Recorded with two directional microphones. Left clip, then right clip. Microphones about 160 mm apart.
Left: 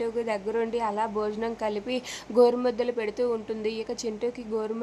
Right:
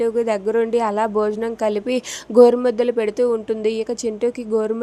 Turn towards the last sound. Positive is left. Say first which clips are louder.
# right 10 dB
turn(degrees=-30)  # may be behind; listen again after turning